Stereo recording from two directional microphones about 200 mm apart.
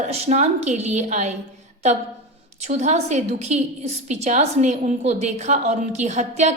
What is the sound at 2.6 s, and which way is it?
A woman's voice, 35° right (ahead or behind).